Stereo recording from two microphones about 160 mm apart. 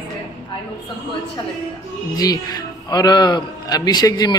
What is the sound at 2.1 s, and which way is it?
A man's voice, 25° left (ahead or behind).